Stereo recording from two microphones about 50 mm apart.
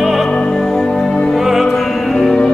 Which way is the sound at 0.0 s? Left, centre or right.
Centre.